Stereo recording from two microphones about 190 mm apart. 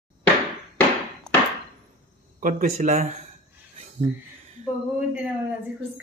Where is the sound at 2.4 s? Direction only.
40° right (ahead or behind).